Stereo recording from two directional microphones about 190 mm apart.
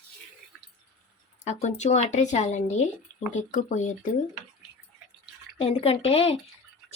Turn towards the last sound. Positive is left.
turn(degrees=30)  # may be behind; listen again after turning